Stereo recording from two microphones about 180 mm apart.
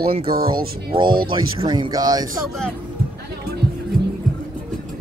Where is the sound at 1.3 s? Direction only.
25° right (ahead or behind).